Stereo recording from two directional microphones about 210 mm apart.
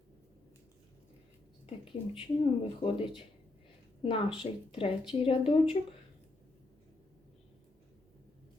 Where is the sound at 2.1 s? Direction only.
25° left (ahead or behind).